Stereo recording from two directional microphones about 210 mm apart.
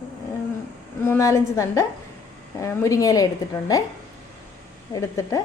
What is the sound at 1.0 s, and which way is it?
Speech, 10° left (ahead or behind).